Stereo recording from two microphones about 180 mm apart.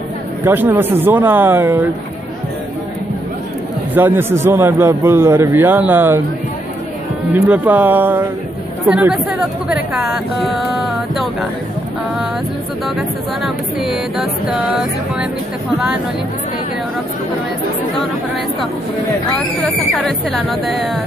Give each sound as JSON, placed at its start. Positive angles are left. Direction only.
{"t": 0.5, "sound": "a man's voice", "side_deg": -10}
{"t": 3.9, "sound": "a man's voice", "side_deg": -10}
{"t": 7.3, "sound": "a man's voice", "side_deg": -10}
{"t": 13.4, "sound": "speech", "side_deg": 0}
{"t": 20.0, "sound": "speech", "side_deg": 0}